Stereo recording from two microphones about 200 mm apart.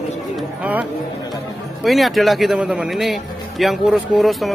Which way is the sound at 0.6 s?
5° right (ahead or behind).